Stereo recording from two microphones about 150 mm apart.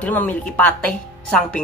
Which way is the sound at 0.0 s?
10° left (ahead or behind).